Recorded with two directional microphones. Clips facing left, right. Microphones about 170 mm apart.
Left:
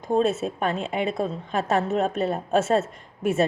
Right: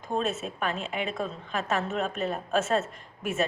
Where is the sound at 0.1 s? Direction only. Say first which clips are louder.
Left 7 dB; 30° left (ahead or behind).